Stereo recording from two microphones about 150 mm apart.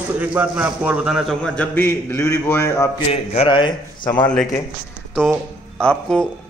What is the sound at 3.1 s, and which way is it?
Speech, 45° left (ahead or behind).